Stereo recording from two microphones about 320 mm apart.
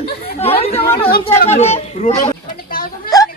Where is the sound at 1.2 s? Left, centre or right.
Centre.